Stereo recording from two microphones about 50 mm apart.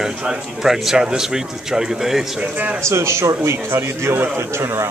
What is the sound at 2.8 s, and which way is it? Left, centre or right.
A man's voice, right.